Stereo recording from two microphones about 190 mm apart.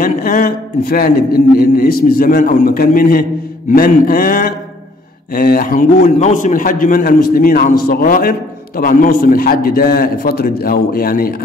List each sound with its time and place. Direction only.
0.0 s a man's voice: 50° left (ahead or behind)